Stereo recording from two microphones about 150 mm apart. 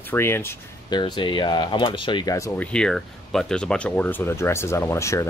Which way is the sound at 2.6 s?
5° left (ahead or behind).